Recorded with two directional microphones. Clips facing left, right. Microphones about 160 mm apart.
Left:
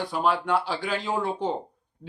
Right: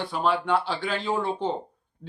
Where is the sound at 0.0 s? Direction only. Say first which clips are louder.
Even; 10° left (ahead or behind).